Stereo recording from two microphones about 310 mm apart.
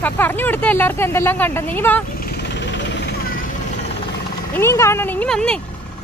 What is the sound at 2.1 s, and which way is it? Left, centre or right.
Jackhammer, left.